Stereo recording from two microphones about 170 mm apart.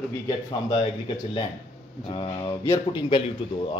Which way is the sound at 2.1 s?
30° left (ahead or behind).